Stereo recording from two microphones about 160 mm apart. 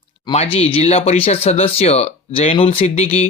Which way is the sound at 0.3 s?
35° left (ahead or behind).